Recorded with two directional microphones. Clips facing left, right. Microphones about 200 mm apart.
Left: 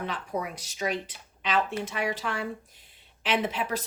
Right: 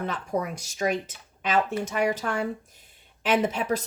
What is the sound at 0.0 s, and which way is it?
Speech, 45° right (ahead or behind).